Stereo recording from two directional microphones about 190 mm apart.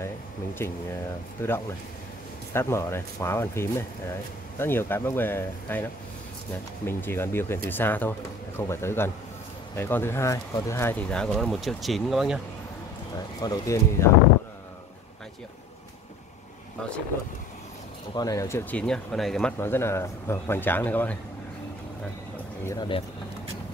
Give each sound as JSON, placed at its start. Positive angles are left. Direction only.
{"t": 0.6, "sound": "speech", "side_deg": 15}
{"t": 6.9, "sound": "speech", "side_deg": 10}
{"t": 13.1, "sound": "speech", "side_deg": 20}
{"t": 18.1, "sound": "speech", "side_deg": 20}
{"t": 19.6, "sound": "speech", "side_deg": 10}
{"t": 22.7, "sound": "speech", "side_deg": 25}